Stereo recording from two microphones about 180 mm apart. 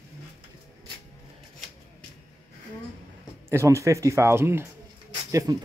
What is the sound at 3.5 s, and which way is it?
Speech, 15° right (ahead or behind).